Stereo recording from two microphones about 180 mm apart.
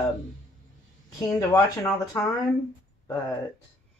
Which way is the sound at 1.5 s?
15° left (ahead or behind).